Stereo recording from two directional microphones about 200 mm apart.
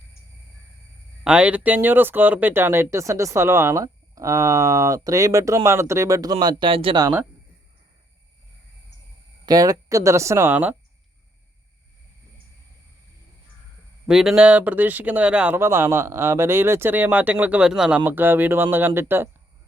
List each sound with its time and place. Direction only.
1.2 s speech: 5° right (ahead or behind); by 7.1 s 25° right (ahead or behind)
9.5 s speech: 20° right (ahead or behind)
14.1 s speech: 5° right (ahead or behind)